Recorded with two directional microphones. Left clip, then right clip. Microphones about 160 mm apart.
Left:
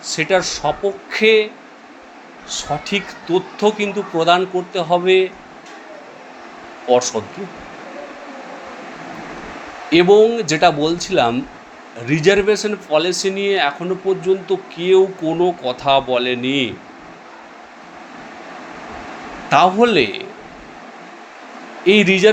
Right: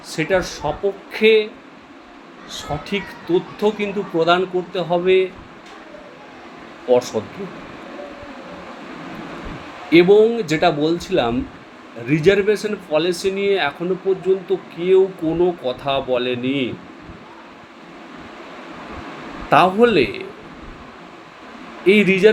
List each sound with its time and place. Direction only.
0.0 s speech: 20° left (ahead or behind)
2.5 s speech: 20° left (ahead or behind)
6.8 s speech: 20° left (ahead or behind)
9.9 s speech: 20° left (ahead or behind)
19.5 s speech: 20° left (ahead or behind)
21.8 s speech: 20° left (ahead or behind)